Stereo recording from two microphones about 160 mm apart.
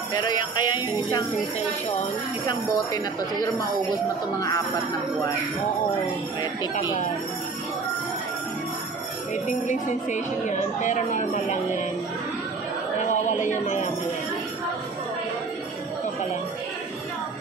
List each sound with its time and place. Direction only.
0.1 s speech: 25° left (ahead or behind)
2.4 s speech: 25° left (ahead or behind)
9.3 s speech: 50° left (ahead or behind)
13.0 s a sound: 50° left (ahead or behind)